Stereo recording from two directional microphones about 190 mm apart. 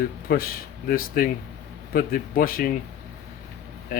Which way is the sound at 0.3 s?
50° left (ahead or behind).